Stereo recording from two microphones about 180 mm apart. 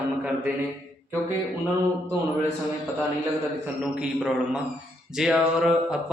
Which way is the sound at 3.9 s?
5° right (ahead or behind).